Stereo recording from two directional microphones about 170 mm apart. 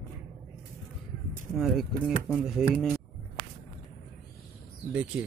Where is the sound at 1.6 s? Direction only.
Centre (ahead or behind).